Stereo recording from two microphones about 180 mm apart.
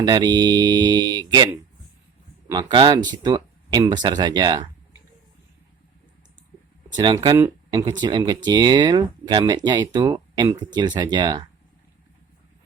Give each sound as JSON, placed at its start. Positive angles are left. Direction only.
{"t": 0.0, "sound": "speech", "side_deg": -25}
{"t": 2.5, "sound": "speech", "side_deg": -25}
{"t": 6.9, "sound": "speech", "side_deg": -25}